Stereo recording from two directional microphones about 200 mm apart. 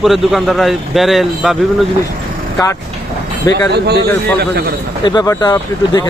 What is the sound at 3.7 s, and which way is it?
Speech, 55° right (ahead or behind).